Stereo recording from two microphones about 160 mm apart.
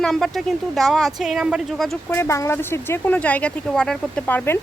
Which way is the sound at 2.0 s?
15° left (ahead or behind).